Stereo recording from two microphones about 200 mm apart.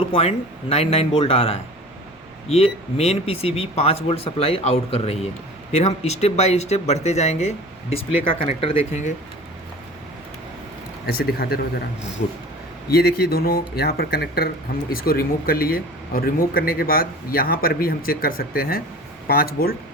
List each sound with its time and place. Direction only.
0.0 s speech: 30° left (ahead or behind)
11.0 s speech: 50° left (ahead or behind)
12.9 s speech: 50° left (ahead or behind)